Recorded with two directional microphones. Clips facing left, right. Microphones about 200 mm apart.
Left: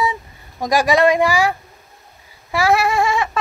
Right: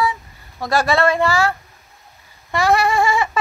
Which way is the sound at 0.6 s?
15° left (ahead or behind).